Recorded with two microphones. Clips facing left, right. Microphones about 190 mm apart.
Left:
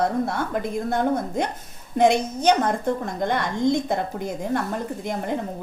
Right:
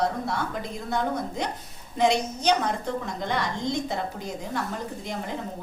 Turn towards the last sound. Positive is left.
turn(degrees=55)  # may be behind; listen again after turning